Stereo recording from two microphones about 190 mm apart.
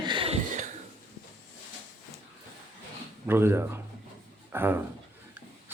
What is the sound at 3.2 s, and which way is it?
Speech, 10° right (ahead or behind).